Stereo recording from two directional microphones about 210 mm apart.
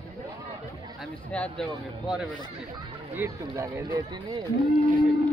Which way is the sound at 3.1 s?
15° right (ahead or behind).